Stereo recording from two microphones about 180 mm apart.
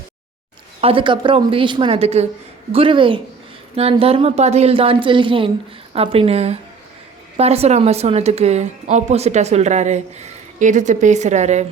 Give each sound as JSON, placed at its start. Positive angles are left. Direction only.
{"t": 0.8, "sound": "a woman's voice", "side_deg": -30}